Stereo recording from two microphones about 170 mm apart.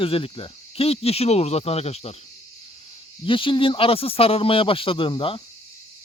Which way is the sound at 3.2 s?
30° left (ahead or behind).